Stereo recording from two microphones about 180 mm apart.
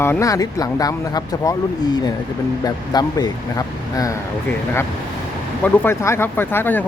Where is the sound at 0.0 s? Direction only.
15° left (ahead or behind).